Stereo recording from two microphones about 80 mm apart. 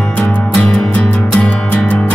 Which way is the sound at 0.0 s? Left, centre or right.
Centre.